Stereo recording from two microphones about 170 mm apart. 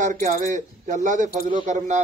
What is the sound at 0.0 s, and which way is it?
Speech, 50° right (ahead or behind).